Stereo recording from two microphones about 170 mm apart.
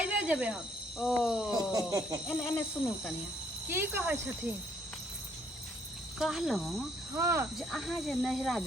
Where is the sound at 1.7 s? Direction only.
20° right (ahead or behind).